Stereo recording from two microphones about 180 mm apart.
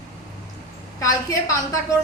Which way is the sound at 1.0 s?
20° left (ahead or behind).